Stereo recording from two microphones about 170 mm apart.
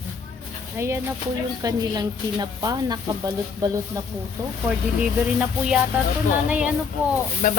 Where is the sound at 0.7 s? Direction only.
15° right (ahead or behind).